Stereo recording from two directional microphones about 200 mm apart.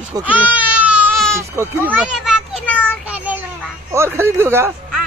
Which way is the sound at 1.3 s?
15° right (ahead or behind).